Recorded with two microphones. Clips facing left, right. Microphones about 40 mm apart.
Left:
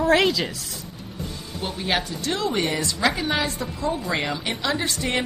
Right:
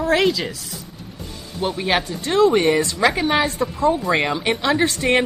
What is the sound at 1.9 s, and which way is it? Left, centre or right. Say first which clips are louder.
Speech: right 11 dB; right.